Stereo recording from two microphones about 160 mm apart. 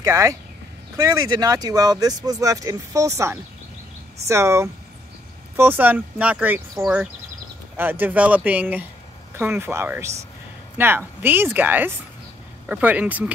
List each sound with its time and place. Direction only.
0.0 s speech: 20° right (ahead or behind)
7.7 s speech: 10° right (ahead or behind)